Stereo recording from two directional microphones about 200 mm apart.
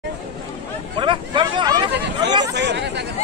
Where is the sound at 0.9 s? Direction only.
25° right (ahead or behind).